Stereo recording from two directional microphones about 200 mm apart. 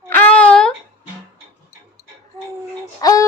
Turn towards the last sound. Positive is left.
turn(degrees=15)  # may be behind; listen again after turning